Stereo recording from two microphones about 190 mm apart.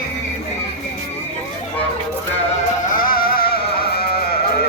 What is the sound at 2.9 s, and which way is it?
Sheep, 50° left (ahead or behind).